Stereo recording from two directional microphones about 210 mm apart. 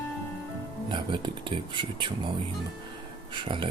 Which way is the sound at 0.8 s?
20° right (ahead or behind).